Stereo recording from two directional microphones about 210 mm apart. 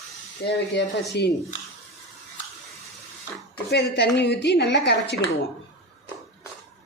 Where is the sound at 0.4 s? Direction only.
55° left (ahead or behind).